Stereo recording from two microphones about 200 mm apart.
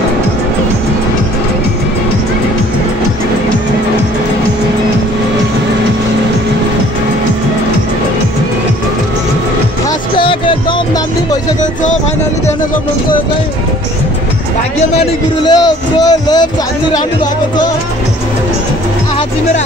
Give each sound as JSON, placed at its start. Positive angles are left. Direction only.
{"t": 10.1, "sound": "music", "side_deg": 25}
{"t": 15.0, "sound": "speech", "side_deg": 20}